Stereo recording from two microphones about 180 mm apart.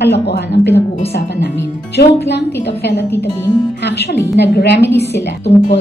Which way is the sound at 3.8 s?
70° left (ahead or behind).